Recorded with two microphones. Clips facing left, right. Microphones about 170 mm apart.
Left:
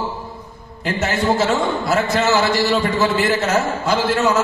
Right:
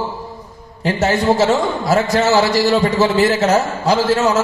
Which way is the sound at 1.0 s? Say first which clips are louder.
Right 4 dB; 40° right (ahead or behind).